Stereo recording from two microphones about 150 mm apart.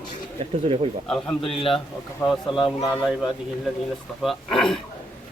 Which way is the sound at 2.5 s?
30° left (ahead or behind).